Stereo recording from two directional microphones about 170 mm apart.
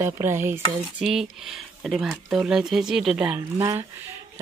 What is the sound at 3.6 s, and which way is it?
Speech, 20° right (ahead or behind).